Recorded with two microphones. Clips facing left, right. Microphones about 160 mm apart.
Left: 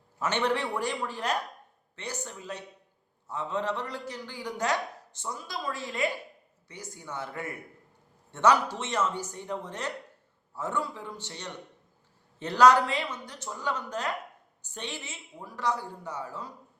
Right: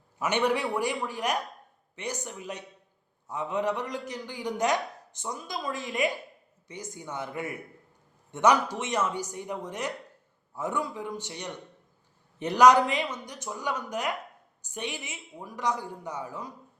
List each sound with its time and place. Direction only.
0.2 s a man's voice: 10° right (ahead or behind)